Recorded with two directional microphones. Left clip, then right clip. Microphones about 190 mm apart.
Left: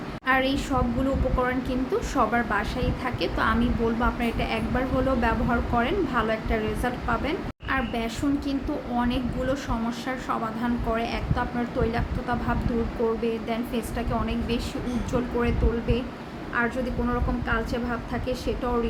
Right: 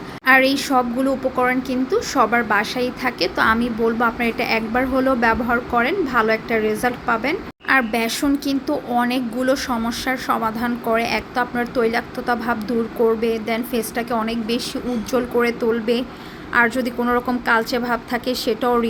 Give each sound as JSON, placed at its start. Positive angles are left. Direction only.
{"t": 0.3, "sound": "a woman's voice", "side_deg": -30}